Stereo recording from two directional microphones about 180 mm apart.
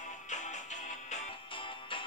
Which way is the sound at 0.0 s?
40° left (ahead or behind).